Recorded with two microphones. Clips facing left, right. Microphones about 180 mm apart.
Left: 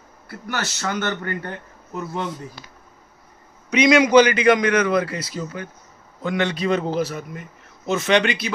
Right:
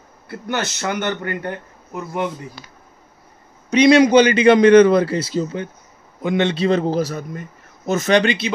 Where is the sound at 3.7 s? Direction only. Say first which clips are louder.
Right 3 dB; 35° right (ahead or behind).